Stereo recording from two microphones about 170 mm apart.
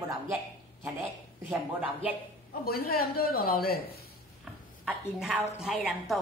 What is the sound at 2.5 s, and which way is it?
A man's voice, 60° left (ahead or behind).